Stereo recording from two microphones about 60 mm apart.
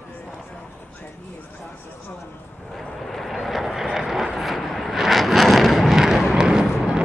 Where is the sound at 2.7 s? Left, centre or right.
Centre.